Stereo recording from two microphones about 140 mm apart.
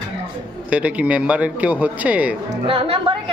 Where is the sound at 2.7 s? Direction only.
45° right (ahead or behind).